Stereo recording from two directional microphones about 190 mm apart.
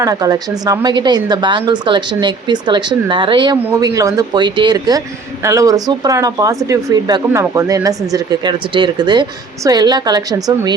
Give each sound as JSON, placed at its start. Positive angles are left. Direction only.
{"t": 0.0, "sound": "a woman's voice", "side_deg": -20}